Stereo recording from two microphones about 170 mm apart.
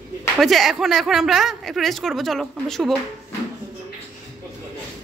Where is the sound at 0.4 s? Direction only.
Centre (ahead or behind).